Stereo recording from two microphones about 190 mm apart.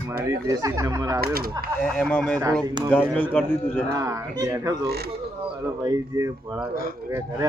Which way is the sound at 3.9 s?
15° right (ahead or behind).